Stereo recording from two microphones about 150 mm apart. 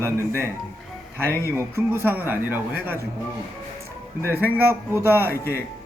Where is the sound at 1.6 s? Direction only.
15° right (ahead or behind).